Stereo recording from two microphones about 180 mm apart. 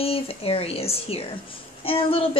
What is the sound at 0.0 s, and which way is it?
A woman's voice, 35° left (ahead or behind).